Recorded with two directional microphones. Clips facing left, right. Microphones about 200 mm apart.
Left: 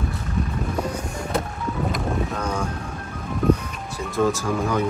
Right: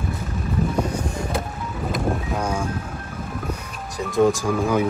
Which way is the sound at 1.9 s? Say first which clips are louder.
Right 5 dB; 10° right (ahead or behind).